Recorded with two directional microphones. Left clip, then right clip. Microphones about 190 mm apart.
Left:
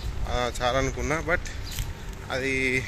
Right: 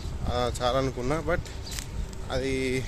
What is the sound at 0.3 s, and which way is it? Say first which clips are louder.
A man's voice: left 1 dB; 10° right (ahead or behind).